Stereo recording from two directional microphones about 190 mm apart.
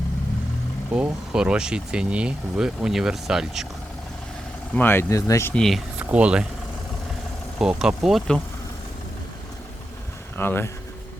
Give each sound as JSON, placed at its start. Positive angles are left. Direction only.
{"t": 0.9, "sound": "speech", "side_deg": -5}
{"t": 4.7, "sound": "speech", "side_deg": 10}
{"t": 7.6, "sound": "speech", "side_deg": -5}
{"t": 10.3, "sound": "speech", "side_deg": 10}